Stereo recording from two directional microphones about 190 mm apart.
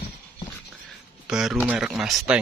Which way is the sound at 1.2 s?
5° right (ahead or behind).